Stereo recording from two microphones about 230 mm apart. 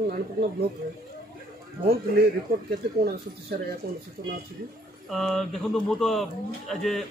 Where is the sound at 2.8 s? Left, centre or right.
Right.